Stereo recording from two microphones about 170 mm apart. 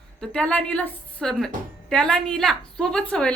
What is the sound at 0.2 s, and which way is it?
A woman's voice, 5° left (ahead or behind).